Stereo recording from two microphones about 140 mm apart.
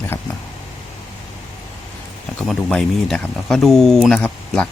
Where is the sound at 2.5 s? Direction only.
5° left (ahead or behind).